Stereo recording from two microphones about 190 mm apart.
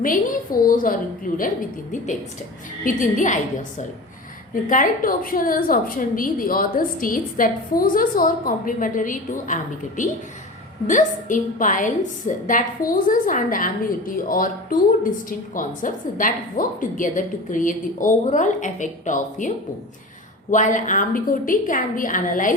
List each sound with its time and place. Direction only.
0.0 s a woman's voice: 45° left (ahead or behind)
2.8 s a woman's voice: 45° left (ahead or behind)
20.5 s a woman's voice: 40° left (ahead or behind)